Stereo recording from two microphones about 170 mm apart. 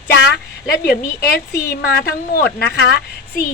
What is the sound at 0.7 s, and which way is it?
A woman's voice, 70° left (ahead or behind).